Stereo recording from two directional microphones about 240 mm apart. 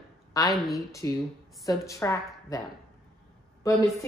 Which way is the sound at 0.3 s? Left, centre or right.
Centre.